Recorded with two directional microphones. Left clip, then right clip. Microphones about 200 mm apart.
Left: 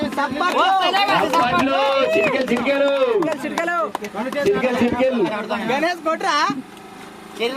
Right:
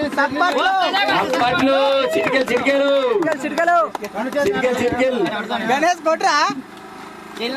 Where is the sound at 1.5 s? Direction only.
55° right (ahead or behind).